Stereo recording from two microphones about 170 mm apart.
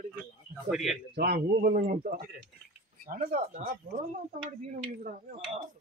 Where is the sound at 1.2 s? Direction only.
65° right (ahead or behind).